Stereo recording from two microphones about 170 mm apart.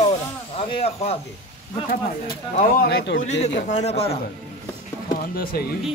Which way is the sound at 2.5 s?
55° left (ahead or behind).